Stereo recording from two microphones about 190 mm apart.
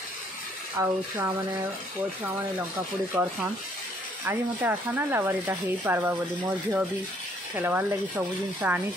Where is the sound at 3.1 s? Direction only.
10° right (ahead or behind).